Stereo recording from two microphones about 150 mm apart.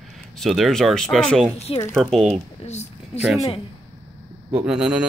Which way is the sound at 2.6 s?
50° left (ahead or behind).